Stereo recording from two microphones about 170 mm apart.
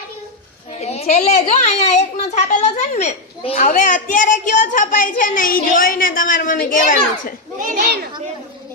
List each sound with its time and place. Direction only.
0.8 s a woman's voice: 40° left (ahead or behind)